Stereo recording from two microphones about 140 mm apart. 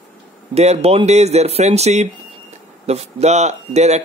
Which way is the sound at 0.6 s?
50° right (ahead or behind).